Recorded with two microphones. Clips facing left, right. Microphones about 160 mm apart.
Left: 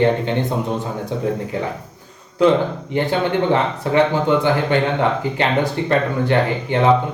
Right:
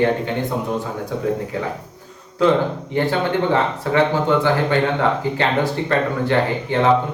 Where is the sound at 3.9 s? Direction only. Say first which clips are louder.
Left 3 dB; 20° left (ahead or behind).